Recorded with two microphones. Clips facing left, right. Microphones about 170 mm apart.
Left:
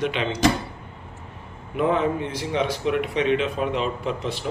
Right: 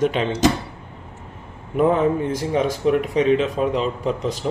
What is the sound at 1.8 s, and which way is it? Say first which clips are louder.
Speech: right 4 dB; 45° right (ahead or behind).